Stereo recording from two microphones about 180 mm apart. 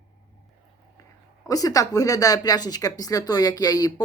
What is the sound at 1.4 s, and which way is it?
Speech, 20° left (ahead or behind).